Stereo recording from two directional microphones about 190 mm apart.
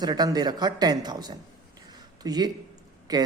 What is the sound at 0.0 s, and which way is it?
A man's voice, 20° right (ahead or behind).